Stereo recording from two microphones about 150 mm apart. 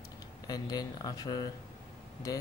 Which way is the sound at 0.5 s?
25° left (ahead or behind).